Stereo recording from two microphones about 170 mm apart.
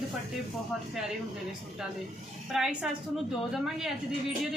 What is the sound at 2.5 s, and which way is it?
Speech, 5° right (ahead or behind).